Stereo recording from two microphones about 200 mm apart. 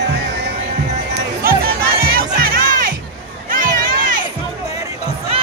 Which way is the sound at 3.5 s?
45° right (ahead or behind).